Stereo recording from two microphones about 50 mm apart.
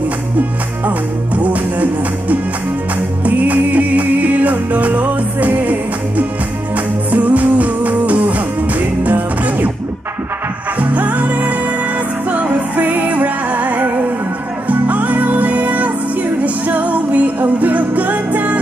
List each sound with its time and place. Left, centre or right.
0.8 s music: right
10.8 s music: right